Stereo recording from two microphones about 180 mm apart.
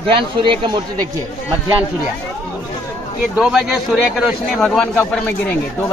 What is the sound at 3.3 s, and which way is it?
A man's voice, centre (ahead or behind).